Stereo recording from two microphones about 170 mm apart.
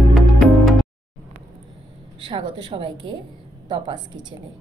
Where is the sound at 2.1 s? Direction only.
30° right (ahead or behind).